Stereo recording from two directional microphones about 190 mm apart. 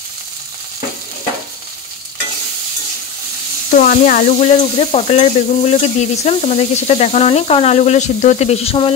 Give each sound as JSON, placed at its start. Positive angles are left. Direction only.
{"t": 3.7, "sound": "stir", "side_deg": 45}